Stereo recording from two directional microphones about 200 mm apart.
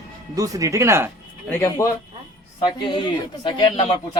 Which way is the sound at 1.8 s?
15° left (ahead or behind).